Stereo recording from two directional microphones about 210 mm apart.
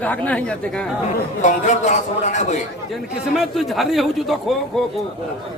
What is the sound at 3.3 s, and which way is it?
A man's voice, centre (ahead or behind).